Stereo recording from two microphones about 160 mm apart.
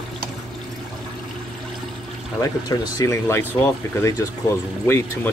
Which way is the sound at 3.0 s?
20° left (ahead or behind).